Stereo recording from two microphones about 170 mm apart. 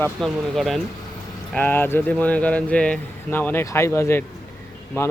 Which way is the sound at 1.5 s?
10° left (ahead or behind).